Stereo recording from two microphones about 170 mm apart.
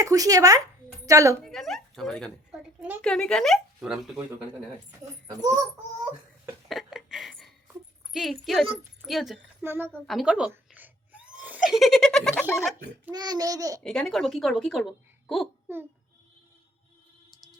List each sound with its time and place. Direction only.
0.0 s a child's voice: 20° right (ahead or behind)
1.4 s speech: centre (ahead or behind)
6.7 s a sound: centre (ahead or behind)
8.1 s speech: centre (ahead or behind)
9.6 s a woman's voice: 15° right (ahead or behind)
9.9 s speech: centre (ahead or behind)
13.1 s a child's voice: 25° right (ahead or behind)
13.8 s speech: centre (ahead or behind)
15.6 s a child's voice: 10° right (ahead or behind)